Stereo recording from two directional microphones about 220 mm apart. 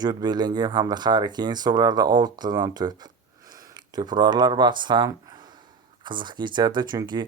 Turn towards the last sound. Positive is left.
turn(degrees=-20)  # may be behind; listen again after turning